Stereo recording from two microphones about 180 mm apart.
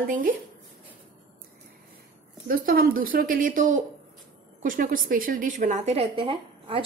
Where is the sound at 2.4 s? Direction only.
55° right (ahead or behind).